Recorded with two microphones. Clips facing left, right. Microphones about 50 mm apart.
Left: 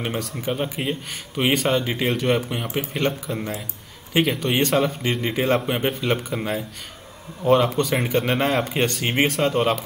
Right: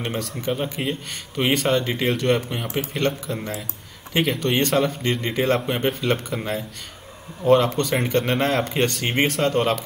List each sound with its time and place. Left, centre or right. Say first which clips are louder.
0.0 s speech: even; centre